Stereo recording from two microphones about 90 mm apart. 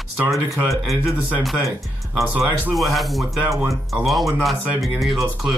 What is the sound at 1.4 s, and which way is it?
Speech, centre (ahead or behind).